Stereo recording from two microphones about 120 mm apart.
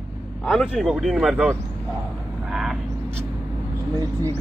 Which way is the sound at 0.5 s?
Centre (ahead or behind).